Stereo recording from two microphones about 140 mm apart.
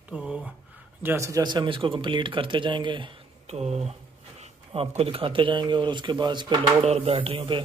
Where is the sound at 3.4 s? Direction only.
50° right (ahead or behind); by 6.6 s 35° right (ahead or behind).